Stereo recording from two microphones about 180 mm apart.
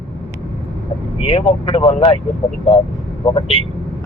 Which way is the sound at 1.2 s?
30° left (ahead or behind).